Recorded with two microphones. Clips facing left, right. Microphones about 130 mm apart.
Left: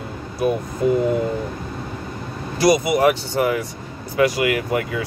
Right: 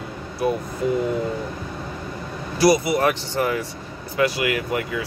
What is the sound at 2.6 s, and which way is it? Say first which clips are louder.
Speech: left 2 dB; 20° left (ahead or behind).